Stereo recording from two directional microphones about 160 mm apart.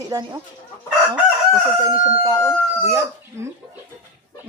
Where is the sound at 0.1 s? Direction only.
25° right (ahead or behind).